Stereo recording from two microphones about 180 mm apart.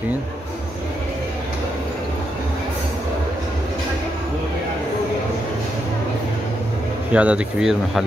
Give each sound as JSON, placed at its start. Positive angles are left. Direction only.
{"t": 7.1, "sound": "speech", "side_deg": -5}